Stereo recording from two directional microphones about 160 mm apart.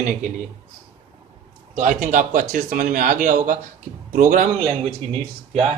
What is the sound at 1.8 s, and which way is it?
Speech, 55° right (ahead or behind).